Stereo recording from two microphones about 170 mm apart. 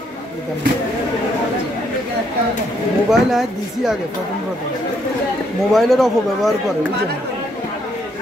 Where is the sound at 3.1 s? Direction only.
Centre (ahead or behind).